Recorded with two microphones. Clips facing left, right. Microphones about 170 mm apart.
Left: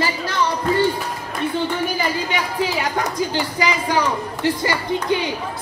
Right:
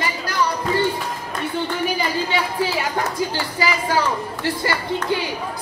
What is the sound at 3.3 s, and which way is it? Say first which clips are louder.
A child's voice: left 2 dB; 20° left (ahead or behind).